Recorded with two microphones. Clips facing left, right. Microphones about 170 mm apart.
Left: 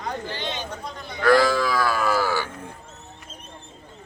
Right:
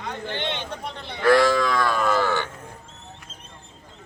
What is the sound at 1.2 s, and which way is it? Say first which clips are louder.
Livestock: right 1 dB; centre (ahead or behind).